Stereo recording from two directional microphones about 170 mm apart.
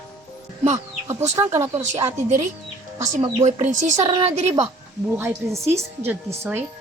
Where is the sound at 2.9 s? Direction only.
40° right (ahead or behind).